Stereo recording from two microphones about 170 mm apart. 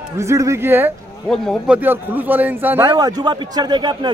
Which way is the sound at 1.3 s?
Centre (ahead or behind).